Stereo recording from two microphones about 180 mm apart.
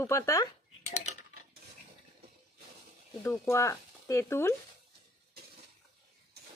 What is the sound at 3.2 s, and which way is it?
Speech, 15° left (ahead or behind).